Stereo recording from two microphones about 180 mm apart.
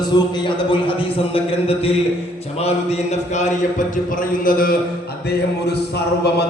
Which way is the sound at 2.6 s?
35° left (ahead or behind).